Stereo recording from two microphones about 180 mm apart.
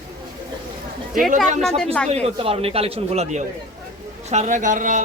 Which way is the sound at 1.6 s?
5° left (ahead or behind).